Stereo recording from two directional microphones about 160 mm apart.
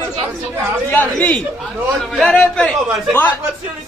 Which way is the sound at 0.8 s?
10° left (ahead or behind).